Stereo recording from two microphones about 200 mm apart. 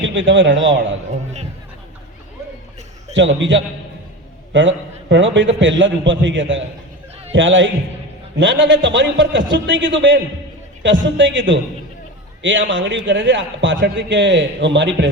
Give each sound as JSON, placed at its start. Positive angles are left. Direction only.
{"t": 0.0, "sound": "a man's voice", "side_deg": -65}
{"t": 3.2, "sound": "a man's voice", "side_deg": -65}